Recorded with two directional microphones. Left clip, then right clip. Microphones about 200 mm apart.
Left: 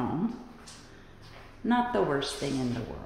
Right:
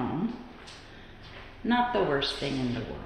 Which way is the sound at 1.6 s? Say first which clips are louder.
Right 1 dB; 20° left (ahead or behind).